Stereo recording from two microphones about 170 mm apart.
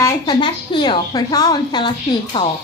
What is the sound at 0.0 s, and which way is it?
Speech, 25° left (ahead or behind).